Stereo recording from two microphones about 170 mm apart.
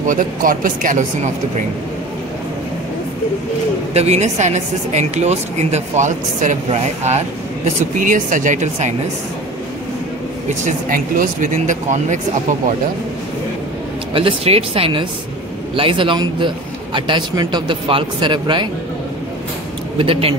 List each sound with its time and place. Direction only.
0.0 s a woman's voice: 50° right (ahead or behind)
3.9 s a woman's voice: 40° right (ahead or behind)
10.6 s a woman's voice: 50° right (ahead or behind)
14.1 s a man's voice: 35° right (ahead or behind)
20.0 s speech: 35° right (ahead or behind)